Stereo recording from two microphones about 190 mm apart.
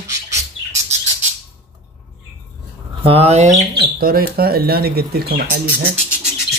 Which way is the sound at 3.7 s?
50° right (ahead or behind).